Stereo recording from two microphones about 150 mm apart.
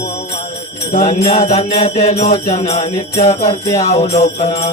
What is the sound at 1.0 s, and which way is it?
Jingle bell, 45° left (ahead or behind).